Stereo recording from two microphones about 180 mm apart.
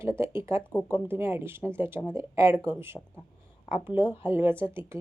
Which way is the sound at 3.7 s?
30° left (ahead or behind).